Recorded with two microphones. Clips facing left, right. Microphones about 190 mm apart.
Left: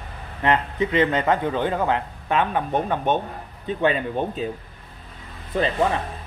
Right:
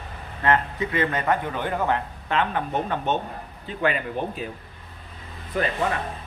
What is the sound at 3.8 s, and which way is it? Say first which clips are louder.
Speech: left 3 dB; 25° left (ahead or behind).